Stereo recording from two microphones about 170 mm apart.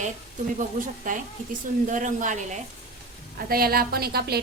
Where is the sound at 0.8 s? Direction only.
50° right (ahead or behind).